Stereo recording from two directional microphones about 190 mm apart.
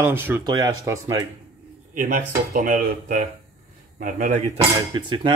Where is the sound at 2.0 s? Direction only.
45° right (ahead or behind).